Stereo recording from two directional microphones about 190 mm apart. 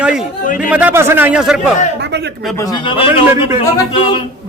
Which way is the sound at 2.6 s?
25° left (ahead or behind).